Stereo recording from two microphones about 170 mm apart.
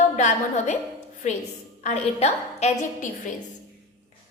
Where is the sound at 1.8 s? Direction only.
40° left (ahead or behind).